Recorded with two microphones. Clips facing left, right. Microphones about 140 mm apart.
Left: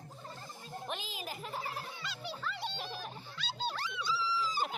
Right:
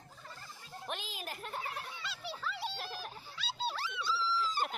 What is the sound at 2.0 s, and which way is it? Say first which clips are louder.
Music: right 1 dB; centre (ahead or behind).